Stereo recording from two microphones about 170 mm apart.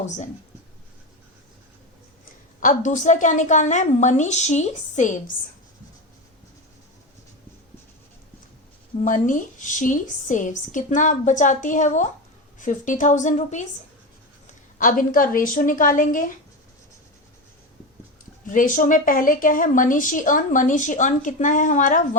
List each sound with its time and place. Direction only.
2.6 s a woman's voice: 50° left (ahead or behind)
9.0 s a woman's voice: 50° left (ahead or behind)
18.4 s a woman's voice: 50° left (ahead or behind)